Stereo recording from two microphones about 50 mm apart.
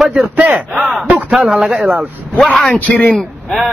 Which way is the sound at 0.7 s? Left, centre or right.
Centre.